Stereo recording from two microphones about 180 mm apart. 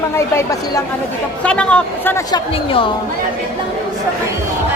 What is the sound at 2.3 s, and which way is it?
Speech, 30° left (ahead or behind).